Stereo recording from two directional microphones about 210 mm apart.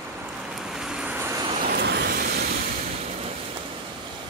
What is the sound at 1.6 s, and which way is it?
Vehicle, 50° right (ahead or behind).